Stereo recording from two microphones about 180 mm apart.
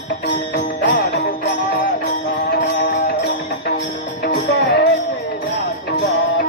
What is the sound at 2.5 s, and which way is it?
Music, 70° left (ahead or behind).